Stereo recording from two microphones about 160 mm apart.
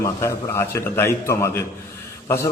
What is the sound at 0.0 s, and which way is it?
A man's voice, 15° left (ahead or behind).